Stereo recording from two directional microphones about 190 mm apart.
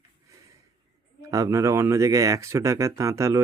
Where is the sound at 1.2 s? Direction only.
15° right (ahead or behind).